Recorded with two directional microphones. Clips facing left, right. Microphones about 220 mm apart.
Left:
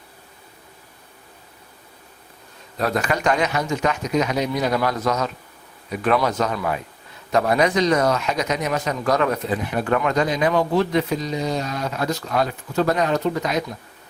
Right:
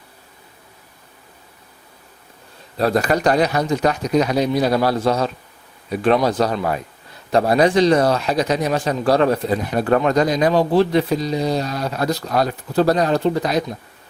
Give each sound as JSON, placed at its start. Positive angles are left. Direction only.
{"t": 2.7, "sound": "speech", "side_deg": -35}